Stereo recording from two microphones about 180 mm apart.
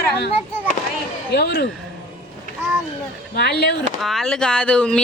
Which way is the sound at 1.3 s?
65° left (ahead or behind).